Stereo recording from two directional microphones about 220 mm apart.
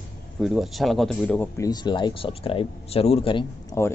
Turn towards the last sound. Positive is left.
turn(degrees=10)  # may be behind; listen again after turning